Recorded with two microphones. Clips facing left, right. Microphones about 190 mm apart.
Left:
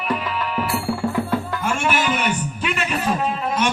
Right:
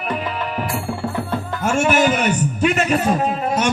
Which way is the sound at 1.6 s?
45° right (ahead or behind).